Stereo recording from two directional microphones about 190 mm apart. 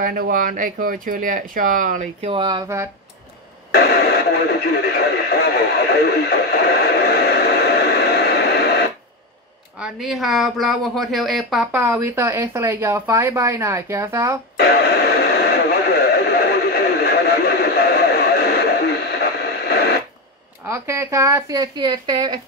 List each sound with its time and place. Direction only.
0.0 s speech: 50° right (ahead or behind)
2.2 s speech: 25° right (ahead or behind)
3.7 s speech: 55° left (ahead or behind)
9.8 s speech: centre (ahead or behind)
11.7 s speech: 10° right (ahead or behind)
14.7 s radio: 55° left (ahead or behind)
20.6 s speech: 15° right (ahead or behind)